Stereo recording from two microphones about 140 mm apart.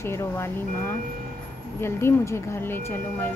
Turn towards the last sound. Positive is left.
turn(degrees=15)  # may be behind; listen again after turning